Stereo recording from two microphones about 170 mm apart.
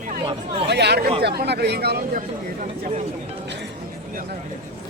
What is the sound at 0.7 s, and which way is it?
Speech, 80° right.